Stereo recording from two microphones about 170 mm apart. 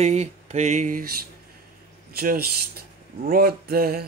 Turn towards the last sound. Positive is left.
turn(degrees=-65)  # may be behind; listen again after turning